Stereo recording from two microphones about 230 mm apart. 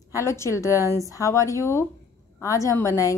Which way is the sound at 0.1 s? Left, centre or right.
Centre.